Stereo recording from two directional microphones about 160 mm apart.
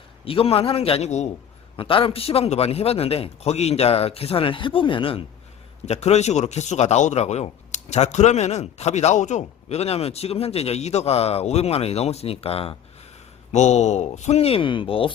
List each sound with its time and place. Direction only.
0.3 s a man's voice: 35° left (ahead or behind)
5.8 s a man's voice: 45° left (ahead or behind)